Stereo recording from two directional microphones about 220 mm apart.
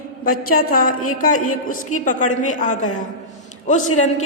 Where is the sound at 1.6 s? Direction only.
35° left (ahead or behind).